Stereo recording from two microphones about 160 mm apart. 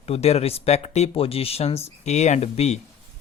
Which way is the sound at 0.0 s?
40° left (ahead or behind).